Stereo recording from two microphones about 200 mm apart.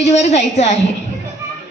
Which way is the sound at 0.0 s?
35° left (ahead or behind).